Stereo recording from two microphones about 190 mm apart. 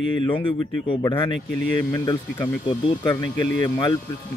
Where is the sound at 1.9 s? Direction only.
15° left (ahead or behind).